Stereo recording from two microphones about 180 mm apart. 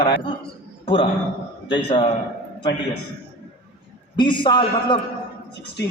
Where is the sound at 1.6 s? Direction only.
25° left (ahead or behind).